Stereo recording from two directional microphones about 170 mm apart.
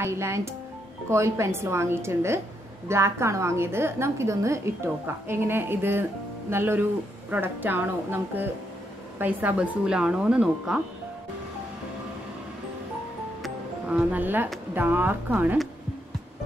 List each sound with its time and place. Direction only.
0.0 s a woman's voice: 15° right (ahead or behind)
13.4 s music: 5° right (ahead or behind)
14.7 s a woman's voice: 10° right (ahead or behind)